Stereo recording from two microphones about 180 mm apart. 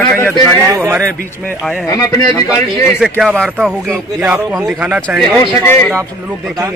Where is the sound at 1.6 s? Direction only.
Centre (ahead or behind).